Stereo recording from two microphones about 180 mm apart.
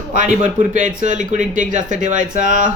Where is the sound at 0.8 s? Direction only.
45° right (ahead or behind).